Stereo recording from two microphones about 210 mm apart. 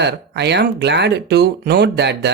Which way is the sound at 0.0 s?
55° right (ahead or behind).